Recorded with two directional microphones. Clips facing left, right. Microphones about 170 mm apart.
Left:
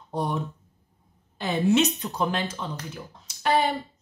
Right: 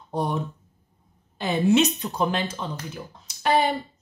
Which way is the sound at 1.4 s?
15° right (ahead or behind).